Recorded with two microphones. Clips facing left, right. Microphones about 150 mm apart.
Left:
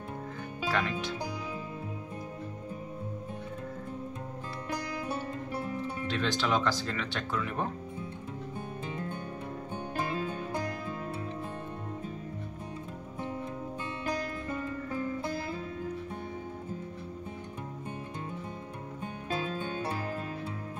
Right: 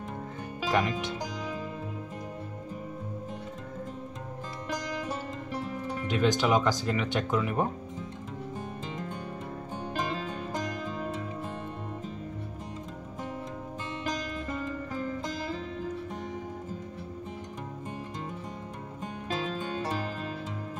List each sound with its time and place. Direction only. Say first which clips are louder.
0.7 s speech: right 4 dB; 15° right (ahead or behind)
6.0 s speech: right 6 dB; 15° right (ahead or behind)